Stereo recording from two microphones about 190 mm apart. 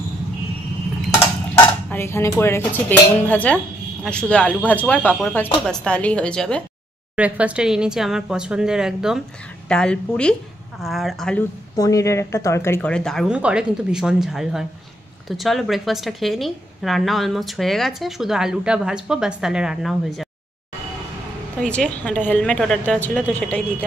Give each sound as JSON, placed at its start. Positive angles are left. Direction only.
{"t": 1.9, "sound": "a woman's voice", "side_deg": 10}
{"t": 7.2, "sound": "a woman's voice", "side_deg": -5}
{"t": 11.7, "sound": "a woman's voice", "side_deg": 15}
{"t": 21.5, "sound": "a woman's voice", "side_deg": 5}